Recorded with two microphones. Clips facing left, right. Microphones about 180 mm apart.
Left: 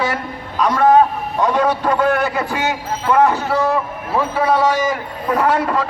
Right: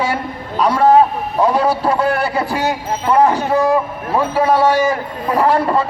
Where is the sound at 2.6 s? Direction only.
35° right (ahead or behind).